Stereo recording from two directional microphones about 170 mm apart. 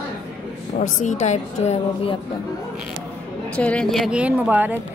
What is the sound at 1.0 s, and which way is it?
A woman's voice, 45° left (ahead or behind).